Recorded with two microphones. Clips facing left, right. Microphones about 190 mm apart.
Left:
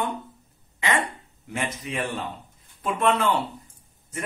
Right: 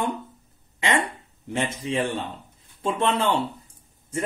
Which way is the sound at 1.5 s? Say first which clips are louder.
Right 4 dB; 30° right (ahead or behind).